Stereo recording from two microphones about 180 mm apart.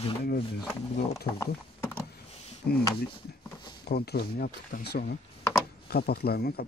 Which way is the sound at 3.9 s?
60° left (ahead or behind).